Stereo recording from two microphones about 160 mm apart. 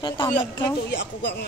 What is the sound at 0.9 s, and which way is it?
Speech, 90° left.